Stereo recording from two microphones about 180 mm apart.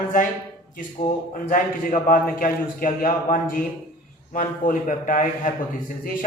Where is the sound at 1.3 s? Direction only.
45° left (ahead or behind).